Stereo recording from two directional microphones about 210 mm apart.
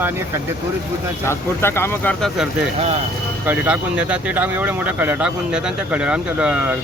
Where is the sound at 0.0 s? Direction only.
10° right (ahead or behind).